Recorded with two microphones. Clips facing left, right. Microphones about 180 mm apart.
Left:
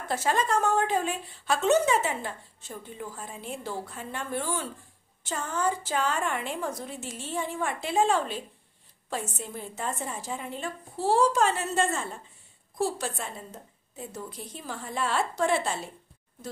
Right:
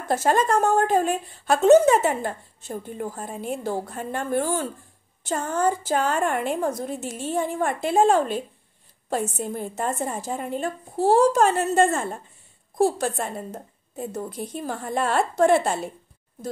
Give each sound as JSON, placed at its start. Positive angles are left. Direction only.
{"t": 0.1, "sound": "a woman's voice", "side_deg": -45}